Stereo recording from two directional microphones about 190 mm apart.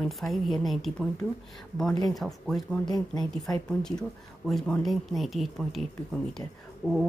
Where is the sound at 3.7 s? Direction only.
5° left (ahead or behind).